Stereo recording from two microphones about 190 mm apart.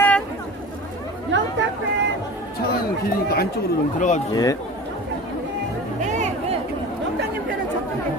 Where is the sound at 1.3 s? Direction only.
70° right (ahead or behind).